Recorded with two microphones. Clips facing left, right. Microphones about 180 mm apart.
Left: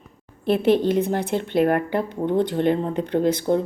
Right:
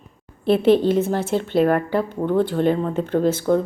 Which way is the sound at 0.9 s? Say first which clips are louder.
Right 2 dB; 15° left (ahead or behind).